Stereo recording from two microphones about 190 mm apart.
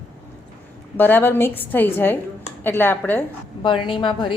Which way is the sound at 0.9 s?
10° left (ahead or behind).